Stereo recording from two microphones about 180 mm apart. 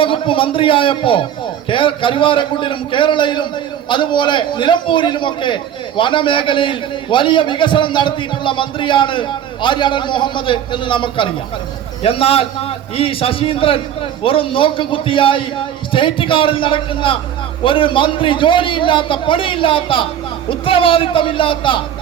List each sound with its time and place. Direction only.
0.0 s a man's voice: 30° left (ahead or behind)